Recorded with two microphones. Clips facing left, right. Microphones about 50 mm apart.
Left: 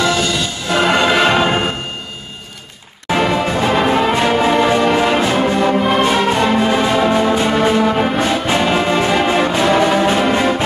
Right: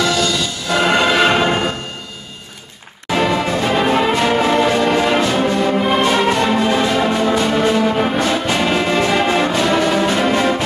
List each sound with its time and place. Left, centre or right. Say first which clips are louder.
0.0 s music: left 1 dB; left
0.7 s music: left 1 dB; centre
3.1 s music: left 1 dB; centre
9.5 s music: left 2 dB; left